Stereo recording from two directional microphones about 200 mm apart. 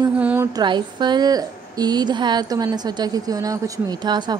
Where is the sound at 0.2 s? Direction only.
10° right (ahead or behind).